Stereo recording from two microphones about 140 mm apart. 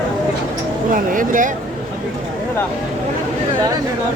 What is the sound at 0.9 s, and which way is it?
Speech, 75° right (ahead or behind).